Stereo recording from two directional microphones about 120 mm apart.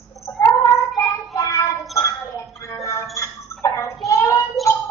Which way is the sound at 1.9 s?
25° left (ahead or behind).